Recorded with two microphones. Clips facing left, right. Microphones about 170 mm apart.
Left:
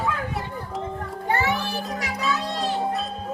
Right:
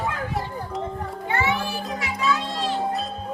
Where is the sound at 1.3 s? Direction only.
40° left (ahead or behind).